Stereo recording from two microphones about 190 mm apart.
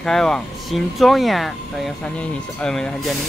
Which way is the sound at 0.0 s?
5° left (ahead or behind).